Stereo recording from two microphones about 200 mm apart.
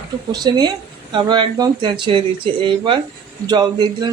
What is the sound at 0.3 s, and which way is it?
Speech, 20° right (ahead or behind).